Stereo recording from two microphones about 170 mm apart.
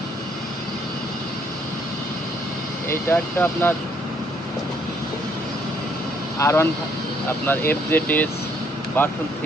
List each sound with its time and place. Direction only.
2.9 s speech: 15° left (ahead or behind)
6.4 s speech: 15° left (ahead or behind)